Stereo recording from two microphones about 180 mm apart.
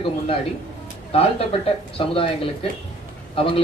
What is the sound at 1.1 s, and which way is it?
A man's voice, 30° left (ahead or behind).